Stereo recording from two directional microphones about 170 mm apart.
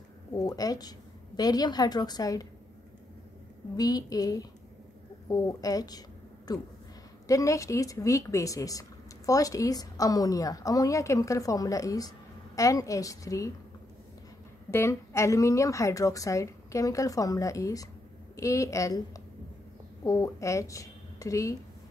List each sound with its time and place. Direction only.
0.5 s speech: 20° left (ahead or behind)
3.7 s a woman's voice: 20° left (ahead or behind)
14.7 s a woman's voice: 15° left (ahead or behind)